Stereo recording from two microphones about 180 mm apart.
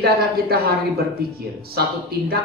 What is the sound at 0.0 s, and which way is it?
A woman's voice, 60° right (ahead or behind).